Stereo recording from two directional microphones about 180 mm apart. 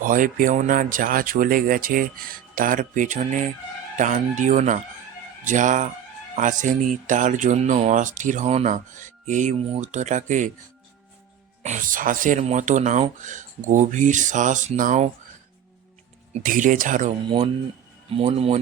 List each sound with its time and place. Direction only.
0.0 s speech: 45° right (ahead or behind)
11.6 s speech: 45° right (ahead or behind)
16.3 s speech: 50° right (ahead or behind)
17.2 s a man's voice: 30° right (ahead or behind)